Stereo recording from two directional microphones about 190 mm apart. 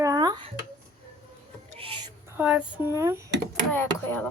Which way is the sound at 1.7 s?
30° right (ahead or behind).